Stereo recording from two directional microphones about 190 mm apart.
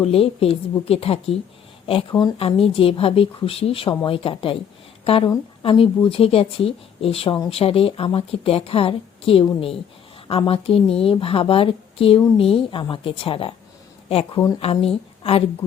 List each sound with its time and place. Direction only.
0.0 s a woman's voice: 30° left (ahead or behind)